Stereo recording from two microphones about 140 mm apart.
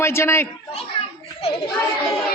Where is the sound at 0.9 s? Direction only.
40° left (ahead or behind).